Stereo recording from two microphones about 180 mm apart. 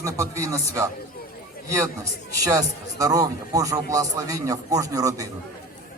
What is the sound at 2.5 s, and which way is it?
A man's voice, 20° right (ahead or behind).